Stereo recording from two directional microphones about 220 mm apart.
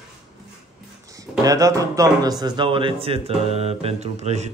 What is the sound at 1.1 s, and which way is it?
Speech, 15° right (ahead or behind).